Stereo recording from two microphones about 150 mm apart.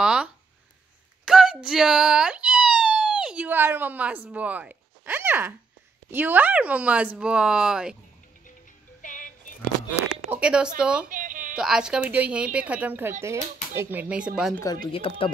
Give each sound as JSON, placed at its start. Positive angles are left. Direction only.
{"t": 0.0, "sound": "a sound", "side_deg": -5}
{"t": 6.0, "sound": "speech", "side_deg": -10}
{"t": 9.0, "sound": "music", "side_deg": 60}
{"t": 10.3, "sound": "speech", "side_deg": -5}
{"t": 11.1, "sound": "a sound", "side_deg": -60}
{"t": 11.5, "sound": "speech", "side_deg": -5}
{"t": 14.9, "sound": "speech", "side_deg": 35}